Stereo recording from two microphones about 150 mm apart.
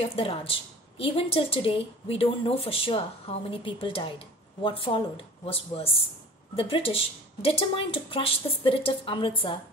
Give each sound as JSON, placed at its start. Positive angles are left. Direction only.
{"t": 0.0, "sound": "a woman's voice", "side_deg": 40}